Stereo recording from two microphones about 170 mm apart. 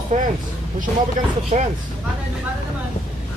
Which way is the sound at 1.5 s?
45° right (ahead or behind).